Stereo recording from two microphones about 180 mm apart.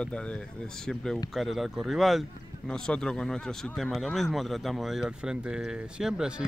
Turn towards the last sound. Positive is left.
turn(degrees=-5)  # may be behind; listen again after turning